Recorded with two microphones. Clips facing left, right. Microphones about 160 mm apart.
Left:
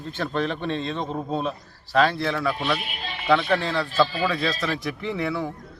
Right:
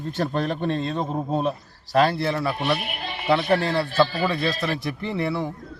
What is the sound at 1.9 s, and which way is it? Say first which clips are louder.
Speech: right 1 dB; 40° right (ahead or behind).